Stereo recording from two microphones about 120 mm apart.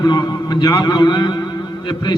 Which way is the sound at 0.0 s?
35° left (ahead or behind).